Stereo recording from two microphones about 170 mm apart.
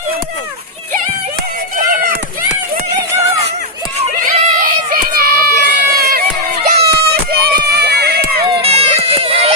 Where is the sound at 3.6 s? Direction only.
40° right (ahead or behind).